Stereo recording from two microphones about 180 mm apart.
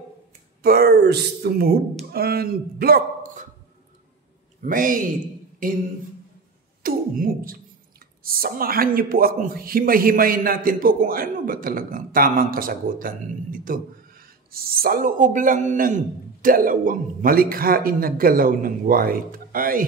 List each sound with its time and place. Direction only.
0.6 s speech: 55° right (ahead or behind)
4.6 s speech: 50° right (ahead or behind)
6.8 s a man's voice: 55° right (ahead or behind)